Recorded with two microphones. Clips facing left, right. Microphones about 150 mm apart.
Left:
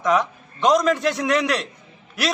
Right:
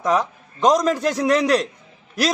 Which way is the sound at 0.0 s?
35° right (ahead or behind).